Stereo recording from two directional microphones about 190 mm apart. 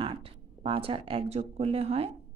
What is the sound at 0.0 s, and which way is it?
Speech, 30° right (ahead or behind).